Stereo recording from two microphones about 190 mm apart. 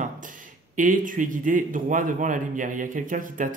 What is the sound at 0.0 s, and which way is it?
Speech, 45° right (ahead or behind).